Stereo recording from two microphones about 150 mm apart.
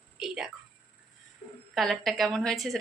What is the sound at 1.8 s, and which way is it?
Speech, centre (ahead or behind).